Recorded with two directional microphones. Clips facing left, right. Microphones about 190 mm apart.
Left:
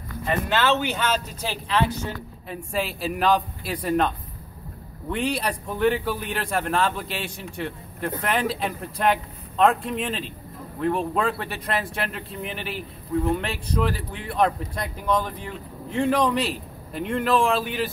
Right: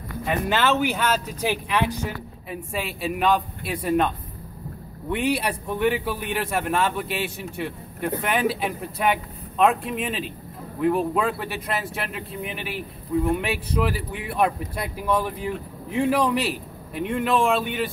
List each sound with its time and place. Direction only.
0.3 s speech: 10° right (ahead or behind)
2.5 s a man's voice: centre (ahead or behind)
5.1 s a man's voice: 5° right (ahead or behind)